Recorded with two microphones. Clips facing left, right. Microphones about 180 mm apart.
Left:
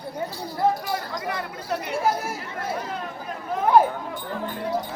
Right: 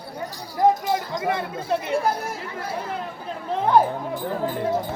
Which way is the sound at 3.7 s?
5° left (ahead or behind).